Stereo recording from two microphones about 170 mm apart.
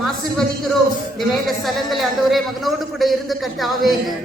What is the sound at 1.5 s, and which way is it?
A man's voice, centre (ahead or behind).